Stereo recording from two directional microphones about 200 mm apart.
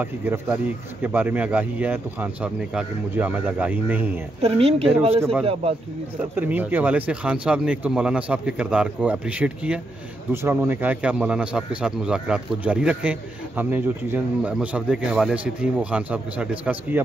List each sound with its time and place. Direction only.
0.0 s a man's voice: 10° right (ahead or behind)
4.4 s a man's voice: 30° right (ahead or behind)
6.3 s a man's voice: 10° right (ahead or behind)